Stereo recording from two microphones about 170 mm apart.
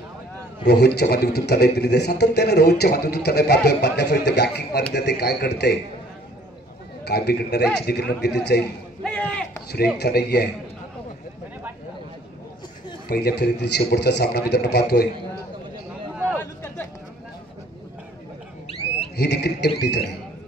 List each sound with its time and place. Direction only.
0.7 s a man's voice: 75° left (ahead or behind)
7.1 s a man's voice: 70° left (ahead or behind)
9.0 s a sound: 5° left (ahead or behind)
9.9 s a man's voice: 75° left (ahead or behind)
13.1 s a man's voice: 70° left (ahead or behind)
16.3 s a sound: 10° left (ahead or behind)
19.1 s a man's voice: 75° left (ahead or behind)